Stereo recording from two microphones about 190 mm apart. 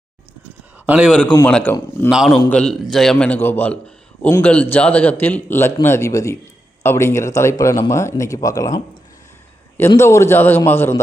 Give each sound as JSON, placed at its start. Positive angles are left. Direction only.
{"t": 0.9, "sound": "a man's voice", "side_deg": -5}
{"t": 1.5, "sound": "a man's voice", "side_deg": 5}
{"t": 9.9, "sound": "a man's voice", "side_deg": 15}